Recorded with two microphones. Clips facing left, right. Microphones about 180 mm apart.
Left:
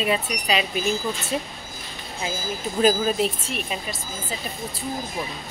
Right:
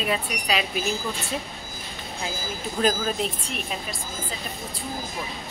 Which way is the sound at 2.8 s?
5° left (ahead or behind).